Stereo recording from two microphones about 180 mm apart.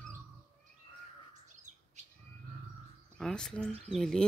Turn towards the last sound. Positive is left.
turn(degrees=5)  # may be behind; listen again after turning